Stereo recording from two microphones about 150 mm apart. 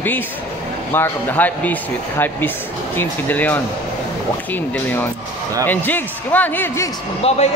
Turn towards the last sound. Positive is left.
turn(degrees=40)  # may be behind; listen again after turning